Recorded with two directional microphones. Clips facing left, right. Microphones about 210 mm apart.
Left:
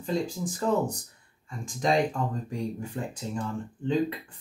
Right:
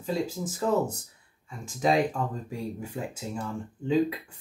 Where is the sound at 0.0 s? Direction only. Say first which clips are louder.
Even; 5° right (ahead or behind).